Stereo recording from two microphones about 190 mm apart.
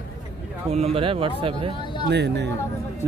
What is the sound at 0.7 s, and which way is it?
Speech, 30° right (ahead or behind).